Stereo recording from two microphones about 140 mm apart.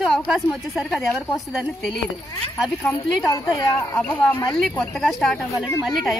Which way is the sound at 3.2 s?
20° left (ahead or behind).